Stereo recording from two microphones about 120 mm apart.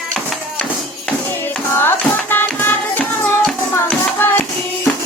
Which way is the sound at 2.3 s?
15° left (ahead or behind).